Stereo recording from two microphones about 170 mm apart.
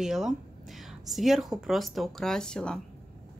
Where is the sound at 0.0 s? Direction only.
Centre (ahead or behind).